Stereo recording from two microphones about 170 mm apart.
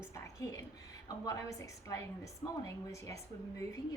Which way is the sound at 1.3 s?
20° left (ahead or behind).